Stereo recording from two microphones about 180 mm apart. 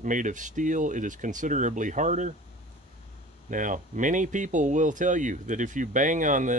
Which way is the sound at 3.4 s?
45° right (ahead or behind).